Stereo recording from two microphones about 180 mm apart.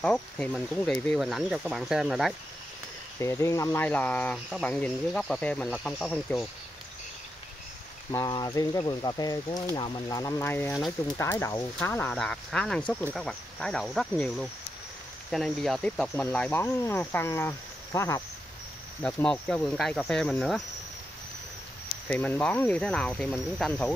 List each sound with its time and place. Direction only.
0.0 s speech: 5° left (ahead or behind)
3.2 s speech: 15° left (ahead or behind)
8.1 s speech: 20° left (ahead or behind); by 20.6 s centre (ahead or behind)
22.1 s speech: 10° left (ahead or behind)